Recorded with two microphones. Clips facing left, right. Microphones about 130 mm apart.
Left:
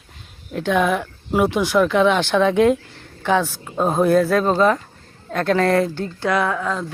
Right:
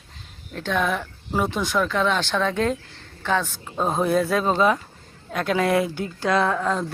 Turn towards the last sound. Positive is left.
turn(degrees=-25)  # may be behind; listen again after turning